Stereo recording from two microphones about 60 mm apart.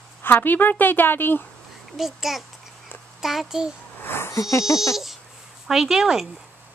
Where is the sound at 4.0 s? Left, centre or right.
Left.